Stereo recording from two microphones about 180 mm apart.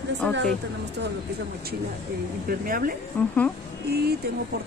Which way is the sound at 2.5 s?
55° right (ahead or behind).